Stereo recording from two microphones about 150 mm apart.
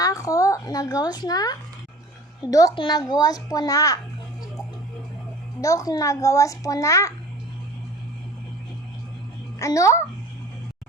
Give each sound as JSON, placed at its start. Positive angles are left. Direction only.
{"t": 0.0, "sound": "a child's voice", "side_deg": 20}
{"t": 5.5, "sound": "a child's voice", "side_deg": 20}
{"t": 9.6, "sound": "a child's voice", "side_deg": 20}